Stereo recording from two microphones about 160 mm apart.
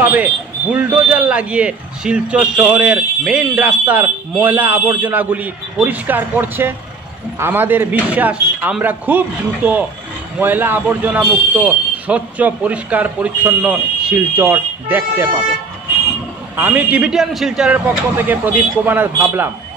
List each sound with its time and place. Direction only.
0.0 s speech: 10° right (ahead or behind)
16.5 s speech: 10° right (ahead or behind)